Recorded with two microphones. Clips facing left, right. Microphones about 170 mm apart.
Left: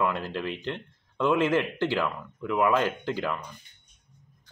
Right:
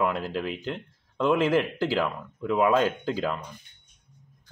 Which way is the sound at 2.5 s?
20° right (ahead or behind).